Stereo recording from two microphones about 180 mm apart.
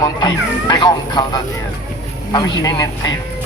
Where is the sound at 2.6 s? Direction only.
20° left (ahead or behind).